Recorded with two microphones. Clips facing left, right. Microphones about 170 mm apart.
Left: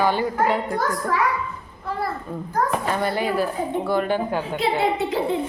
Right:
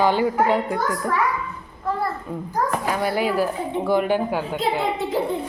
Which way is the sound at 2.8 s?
10° right (ahead or behind).